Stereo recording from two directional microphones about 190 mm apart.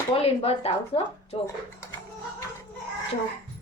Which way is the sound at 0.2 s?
30° left (ahead or behind).